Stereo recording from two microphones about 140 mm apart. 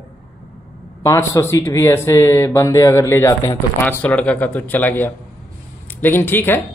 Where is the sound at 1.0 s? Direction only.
20° left (ahead or behind).